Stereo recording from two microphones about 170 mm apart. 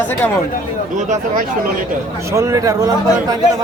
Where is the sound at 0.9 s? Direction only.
45° right (ahead or behind).